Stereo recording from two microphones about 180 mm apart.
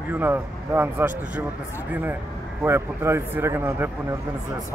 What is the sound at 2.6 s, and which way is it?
Speech, 15° right (ahead or behind).